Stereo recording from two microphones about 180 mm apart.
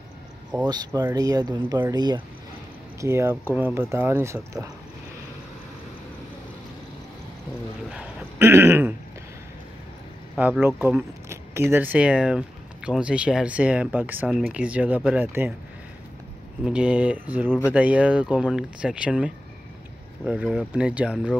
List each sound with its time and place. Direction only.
0.7 s speech: 20° right (ahead or behind)
7.9 s speech: 10° right (ahead or behind)
10.3 s speech: 5° right (ahead or behind)
16.6 s speech: 5° right (ahead or behind)
17.5 s speech: 15° left (ahead or behind)
17.7 s speech: 5° right (ahead or behind)